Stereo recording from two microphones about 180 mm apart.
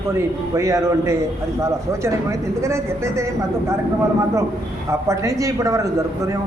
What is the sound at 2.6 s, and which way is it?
Speech, 15° right (ahead or behind).